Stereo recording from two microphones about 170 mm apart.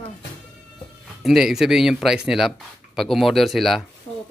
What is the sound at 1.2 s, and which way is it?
A man's voice, 5° right (ahead or behind).